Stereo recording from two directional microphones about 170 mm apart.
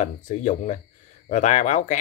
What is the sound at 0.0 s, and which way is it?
Speech, 45° left (ahead or behind).